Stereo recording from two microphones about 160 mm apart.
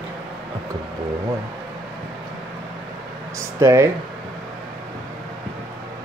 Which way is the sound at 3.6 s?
15° right (ahead or behind).